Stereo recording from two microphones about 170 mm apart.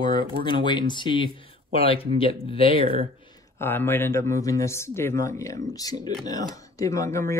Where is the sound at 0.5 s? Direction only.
25° left (ahead or behind).